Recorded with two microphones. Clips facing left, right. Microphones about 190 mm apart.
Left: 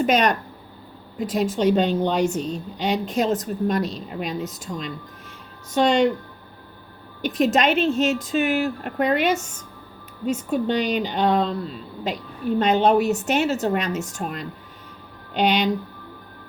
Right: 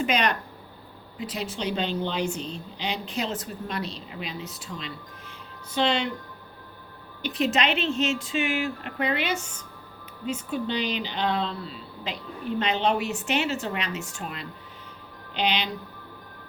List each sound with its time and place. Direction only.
0.0 s a woman's voice: 45° left (ahead or behind)
7.2 s a woman's voice: 45° left (ahead or behind)